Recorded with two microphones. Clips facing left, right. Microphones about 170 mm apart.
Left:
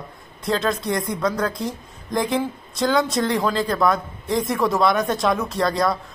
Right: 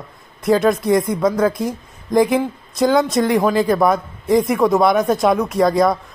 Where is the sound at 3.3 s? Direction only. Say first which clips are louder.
Right 6 dB; 20° right (ahead or behind).